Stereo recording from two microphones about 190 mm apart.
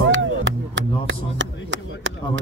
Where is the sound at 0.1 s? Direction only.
75° right (ahead or behind).